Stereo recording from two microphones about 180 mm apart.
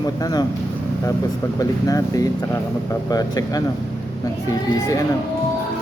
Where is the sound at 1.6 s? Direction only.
20° left (ahead or behind).